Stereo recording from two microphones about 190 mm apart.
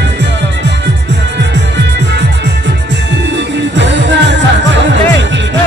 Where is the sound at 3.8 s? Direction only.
70° right (ahead or behind).